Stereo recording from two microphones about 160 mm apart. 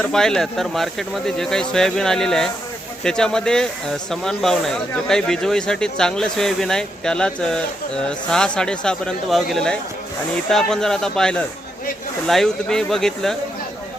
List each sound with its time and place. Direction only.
0.0 s speech: 5° left (ahead or behind)